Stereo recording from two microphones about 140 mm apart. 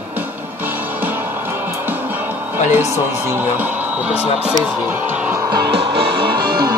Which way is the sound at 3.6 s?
10° right (ahead or behind).